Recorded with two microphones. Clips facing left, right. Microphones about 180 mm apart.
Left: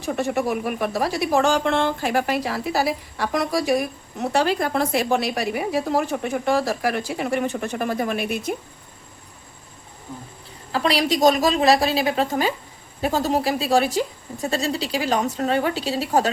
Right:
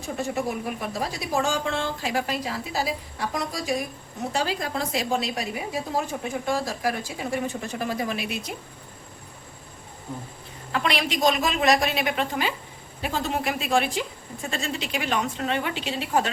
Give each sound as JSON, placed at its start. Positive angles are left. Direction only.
{"t": 0.0, "sound": "speech", "side_deg": 70}
{"t": 10.7, "sound": "a woman's voice", "side_deg": 35}